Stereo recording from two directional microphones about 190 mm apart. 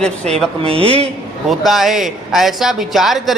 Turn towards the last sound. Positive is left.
turn(degrees=0)  # may be behind; listen again after turning